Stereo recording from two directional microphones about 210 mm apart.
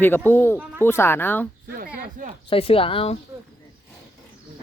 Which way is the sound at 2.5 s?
25° left (ahead or behind).